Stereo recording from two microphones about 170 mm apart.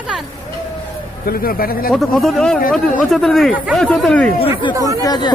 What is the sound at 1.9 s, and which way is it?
Speech, centre (ahead or behind).